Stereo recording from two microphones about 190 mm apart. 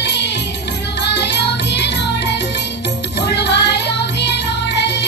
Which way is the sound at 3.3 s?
60° left (ahead or behind).